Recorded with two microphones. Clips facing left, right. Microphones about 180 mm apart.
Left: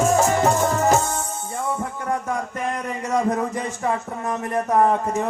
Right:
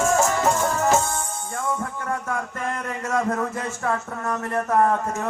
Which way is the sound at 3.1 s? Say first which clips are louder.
Left 2 dB; 15° left (ahead or behind).